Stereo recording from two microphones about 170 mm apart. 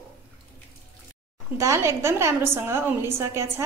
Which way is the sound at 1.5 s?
15° right (ahead or behind).